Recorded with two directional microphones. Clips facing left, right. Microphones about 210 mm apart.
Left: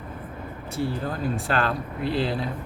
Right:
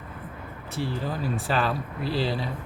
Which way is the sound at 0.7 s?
Centre (ahead or behind).